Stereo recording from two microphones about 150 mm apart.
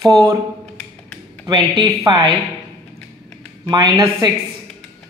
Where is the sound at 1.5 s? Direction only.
35° right (ahead or behind).